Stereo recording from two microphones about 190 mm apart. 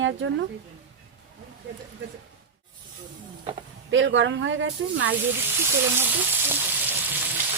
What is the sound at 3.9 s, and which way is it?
Speech, 80° right.